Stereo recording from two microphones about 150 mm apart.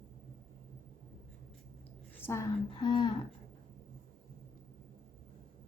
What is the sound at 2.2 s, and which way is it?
Speech, 15° left (ahead or behind).